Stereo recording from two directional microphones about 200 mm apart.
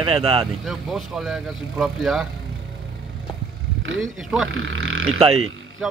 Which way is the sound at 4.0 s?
Centre (ahead or behind).